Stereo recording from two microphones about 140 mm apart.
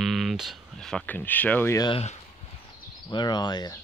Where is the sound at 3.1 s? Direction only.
30° left (ahead or behind).